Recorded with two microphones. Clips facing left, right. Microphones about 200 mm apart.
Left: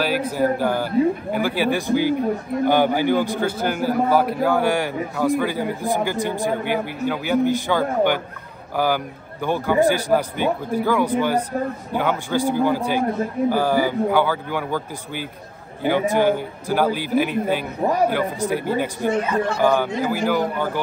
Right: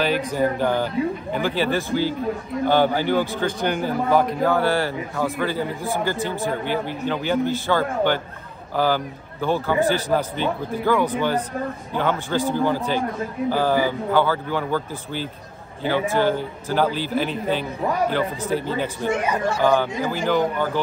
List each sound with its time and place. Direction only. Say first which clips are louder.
0.3 s speech: left 1 dB; 10° left (ahead or behind)
19.0 s speech: left 3 dB; 15° right (ahead or behind)
19.6 s speech: even; 10° left (ahead or behind)